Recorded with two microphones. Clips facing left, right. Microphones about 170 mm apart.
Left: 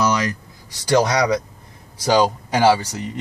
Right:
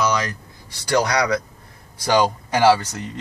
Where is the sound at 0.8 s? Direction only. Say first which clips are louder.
Left 3 dB; 20° left (ahead or behind).